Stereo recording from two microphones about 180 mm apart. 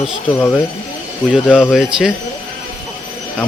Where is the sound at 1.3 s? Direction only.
5° right (ahead or behind).